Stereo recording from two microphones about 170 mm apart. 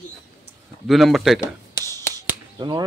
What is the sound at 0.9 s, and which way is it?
Speech, centre (ahead or behind).